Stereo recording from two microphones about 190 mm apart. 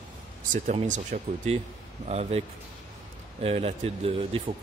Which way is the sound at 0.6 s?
40° right (ahead or behind).